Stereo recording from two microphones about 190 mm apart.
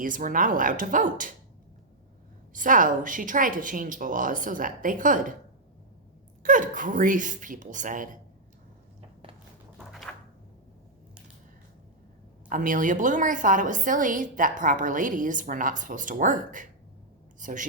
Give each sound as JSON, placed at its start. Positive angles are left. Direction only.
{"t": 0.0, "sound": "a woman's voice", "side_deg": -45}
{"t": 2.5, "sound": "a woman's voice", "side_deg": -45}
{"t": 6.4, "sound": "a woman's voice", "side_deg": -45}
{"t": 9.7, "sound": "a sound", "side_deg": 0}
{"t": 12.5, "sound": "a woman's voice", "side_deg": -45}